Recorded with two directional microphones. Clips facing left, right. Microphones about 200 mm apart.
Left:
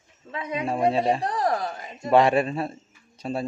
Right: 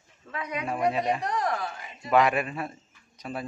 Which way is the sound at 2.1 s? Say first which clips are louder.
Left 4 dB; 30° left (ahead or behind).